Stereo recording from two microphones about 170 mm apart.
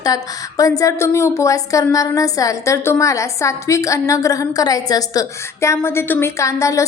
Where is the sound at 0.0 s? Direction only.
20° left (ahead or behind).